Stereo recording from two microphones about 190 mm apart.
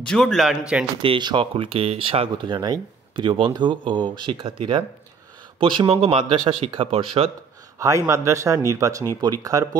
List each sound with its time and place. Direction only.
0.0 s a man's voice: 5° left (ahead or behind)
1.0 s speech: 25° right (ahead or behind)
7.8 s speech: 15° right (ahead or behind)